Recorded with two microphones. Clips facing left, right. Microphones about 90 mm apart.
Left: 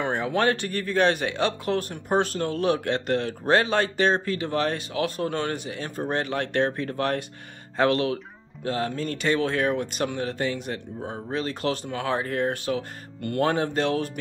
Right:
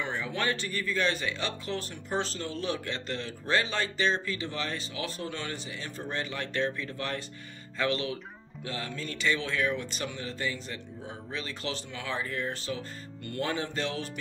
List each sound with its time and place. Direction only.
0.0 s speech: 55° left (ahead or behind)
8.6 s speech: 45° left (ahead or behind); by 10.8 s 65° left (ahead or behind)
11.0 s speech: 50° left (ahead or behind)